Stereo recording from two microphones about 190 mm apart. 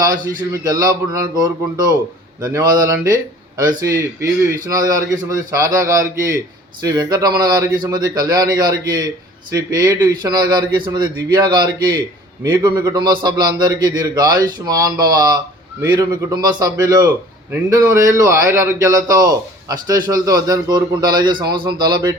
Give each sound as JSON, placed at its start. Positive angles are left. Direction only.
{"t": 0.0, "sound": "a man's voice", "side_deg": -20}